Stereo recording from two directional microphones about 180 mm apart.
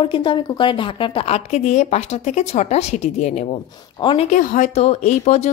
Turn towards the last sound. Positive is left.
turn(degrees=40)  # may be behind; listen again after turning